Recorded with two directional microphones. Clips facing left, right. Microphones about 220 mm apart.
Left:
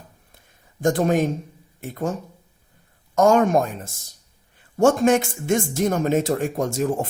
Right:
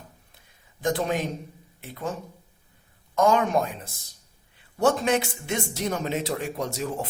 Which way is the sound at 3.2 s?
45° left (ahead or behind).